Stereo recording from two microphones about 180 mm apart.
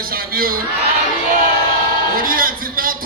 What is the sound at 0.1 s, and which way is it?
Crowd, 55° right (ahead or behind).